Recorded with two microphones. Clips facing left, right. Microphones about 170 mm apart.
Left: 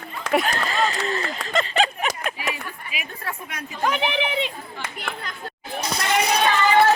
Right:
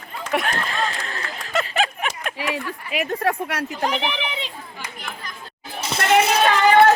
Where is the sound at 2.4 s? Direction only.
75° right (ahead or behind).